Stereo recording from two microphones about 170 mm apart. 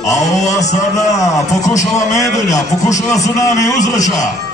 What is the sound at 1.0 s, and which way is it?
A man's voice, 20° left (ahead or behind).